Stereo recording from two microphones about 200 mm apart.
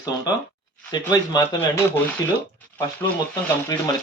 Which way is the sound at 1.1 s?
20° left (ahead or behind).